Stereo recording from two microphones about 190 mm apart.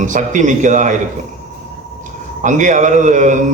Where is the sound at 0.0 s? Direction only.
40° right (ahead or behind).